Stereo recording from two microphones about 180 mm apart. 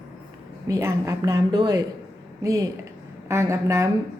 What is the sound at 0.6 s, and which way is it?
A woman's voice, 20° right (ahead or behind).